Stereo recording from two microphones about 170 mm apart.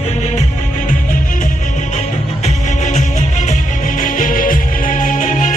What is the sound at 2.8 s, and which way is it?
Music, 45° left (ahead or behind).